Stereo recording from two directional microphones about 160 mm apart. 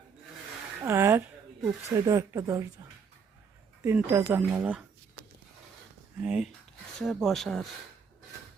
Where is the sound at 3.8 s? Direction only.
15° right (ahead or behind).